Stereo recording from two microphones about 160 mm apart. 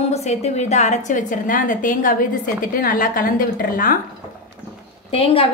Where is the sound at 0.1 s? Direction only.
45° left (ahead or behind); by 4.0 s 60° left (ahead or behind).